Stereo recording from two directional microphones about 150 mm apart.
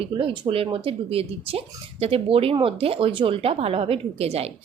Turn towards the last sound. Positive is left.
turn(degrees=-40)  # may be behind; listen again after turning